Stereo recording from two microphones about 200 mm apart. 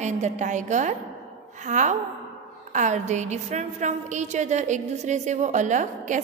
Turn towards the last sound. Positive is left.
turn(degrees=-40)  # may be behind; listen again after turning